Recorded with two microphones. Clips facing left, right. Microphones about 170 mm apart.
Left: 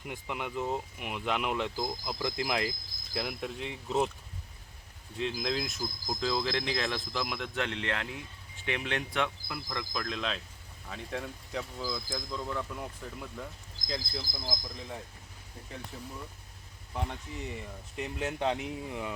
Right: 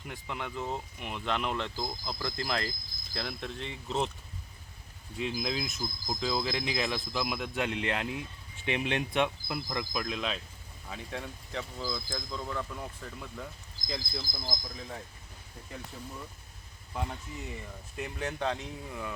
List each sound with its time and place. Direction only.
0.0 s speech: 10° left (ahead or behind)
5.1 s speech: 5° right (ahead or behind)
17.1 s speech: centre (ahead or behind)
18.3 s speech: 15° left (ahead or behind)